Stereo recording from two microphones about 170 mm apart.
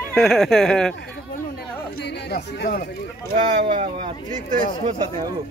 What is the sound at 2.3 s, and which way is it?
Speech, 60° left (ahead or behind).